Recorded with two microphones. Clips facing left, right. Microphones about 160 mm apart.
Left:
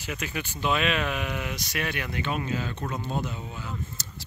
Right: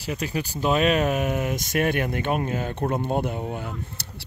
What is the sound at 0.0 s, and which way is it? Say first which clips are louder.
Speech: right 5 dB; 35° right (ahead or behind).